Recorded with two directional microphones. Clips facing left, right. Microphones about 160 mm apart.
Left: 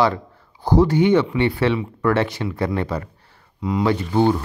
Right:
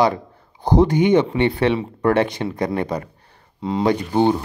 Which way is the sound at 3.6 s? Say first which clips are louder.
Right 1 dB; 25° right (ahead or behind).